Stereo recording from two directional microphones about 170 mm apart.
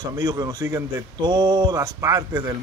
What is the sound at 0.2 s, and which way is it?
Speech, 20° right (ahead or behind).